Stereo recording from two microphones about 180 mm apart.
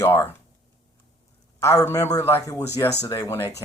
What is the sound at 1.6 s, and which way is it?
Speech, 15° left (ahead or behind).